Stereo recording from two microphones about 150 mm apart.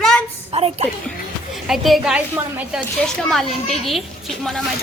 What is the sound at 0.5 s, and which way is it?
Speech, 40° right (ahead or behind).